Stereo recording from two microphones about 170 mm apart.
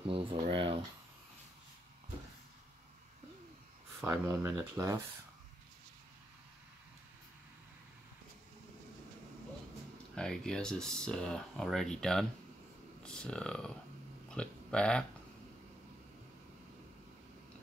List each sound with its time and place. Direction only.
0.0 s speech: 30° right (ahead or behind)
0.5 s a sound: 30° right (ahead or behind)
4.1 s speech: 15° right (ahead or behind)
10.1 s speech: 5° left (ahead or behind)